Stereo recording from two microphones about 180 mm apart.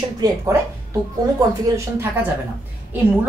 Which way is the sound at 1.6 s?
15° right (ahead or behind).